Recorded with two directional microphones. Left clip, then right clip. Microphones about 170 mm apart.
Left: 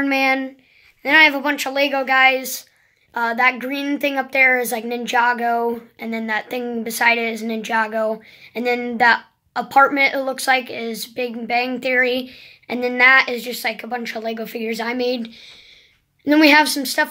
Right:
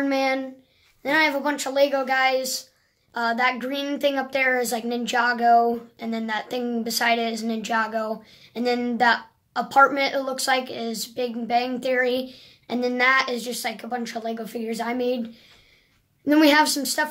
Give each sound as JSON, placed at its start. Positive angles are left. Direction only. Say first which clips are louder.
{"t": 0.0, "sound": "a child's voice", "louder": "left 5 dB", "side_deg": 35}
{"t": 16.3, "sound": "a woman's voice", "louder": "left 4 dB", "side_deg": 30}